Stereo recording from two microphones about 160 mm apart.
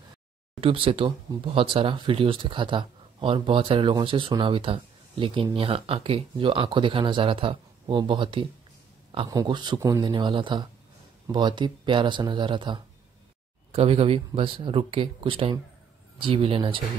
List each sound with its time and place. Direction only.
0.6 s speech: 35° right (ahead or behind)